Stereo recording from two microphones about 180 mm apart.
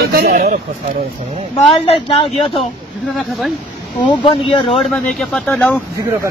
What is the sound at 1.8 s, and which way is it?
Speech, 30° left (ahead or behind).